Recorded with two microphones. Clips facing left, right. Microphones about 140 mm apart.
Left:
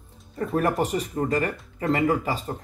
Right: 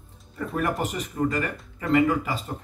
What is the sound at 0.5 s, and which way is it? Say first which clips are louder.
Speech: left 4 dB; 35° left (ahead or behind).